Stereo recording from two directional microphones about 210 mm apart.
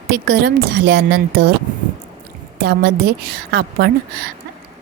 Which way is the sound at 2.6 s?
50° right (ahead or behind).